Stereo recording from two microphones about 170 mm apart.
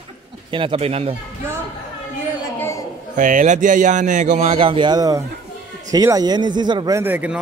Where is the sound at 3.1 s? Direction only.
50° right (ahead or behind).